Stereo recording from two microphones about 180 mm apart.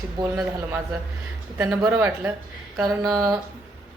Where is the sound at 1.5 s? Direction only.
15° right (ahead or behind).